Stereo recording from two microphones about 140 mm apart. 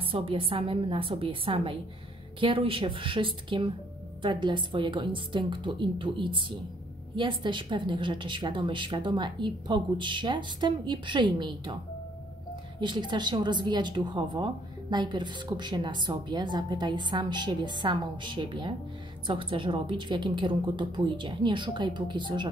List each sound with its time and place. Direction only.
0.0 s a woman's voice: 40° right (ahead or behind)
12.8 s a woman's voice: 35° right (ahead or behind)